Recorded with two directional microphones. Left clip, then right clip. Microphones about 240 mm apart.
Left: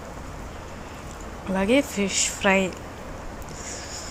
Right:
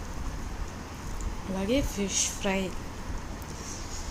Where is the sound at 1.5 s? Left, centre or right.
Centre.